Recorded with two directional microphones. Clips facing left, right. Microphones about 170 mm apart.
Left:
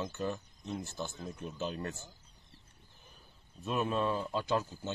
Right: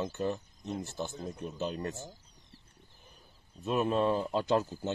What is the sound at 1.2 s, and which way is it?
Speech, 40° right (ahead or behind).